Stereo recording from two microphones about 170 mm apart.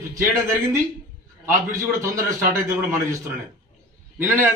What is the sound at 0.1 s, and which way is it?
A man's voice, 15° right (ahead or behind).